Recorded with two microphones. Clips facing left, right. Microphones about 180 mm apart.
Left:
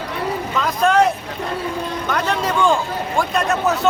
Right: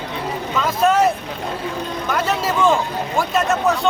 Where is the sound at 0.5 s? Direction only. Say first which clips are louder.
Right 1 dB; 5° right (ahead or behind).